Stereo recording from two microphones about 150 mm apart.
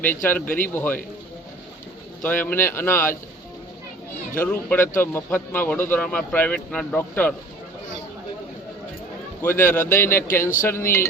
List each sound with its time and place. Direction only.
0.0 s a man's voice: 15° left (ahead or behind)
2.2 s a man's voice: 10° left (ahead or behind)
4.4 s a man's voice: 10° left (ahead or behind)
9.4 s a man's voice: 15° left (ahead or behind)